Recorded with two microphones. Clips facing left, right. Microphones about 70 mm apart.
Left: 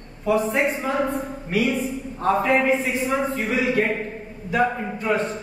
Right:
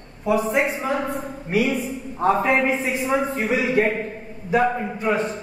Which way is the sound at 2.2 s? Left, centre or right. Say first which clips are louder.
Right 1 dB; centre.